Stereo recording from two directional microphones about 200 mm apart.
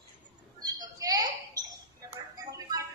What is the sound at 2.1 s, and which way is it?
Music, 20° right (ahead or behind).